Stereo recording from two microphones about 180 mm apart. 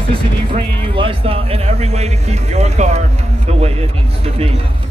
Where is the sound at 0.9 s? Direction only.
30° right (ahead or behind).